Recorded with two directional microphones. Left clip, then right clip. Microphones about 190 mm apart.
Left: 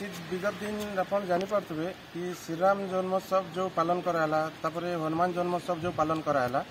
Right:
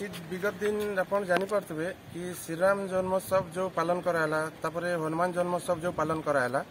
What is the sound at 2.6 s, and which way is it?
A man's voice, 25° right (ahead or behind).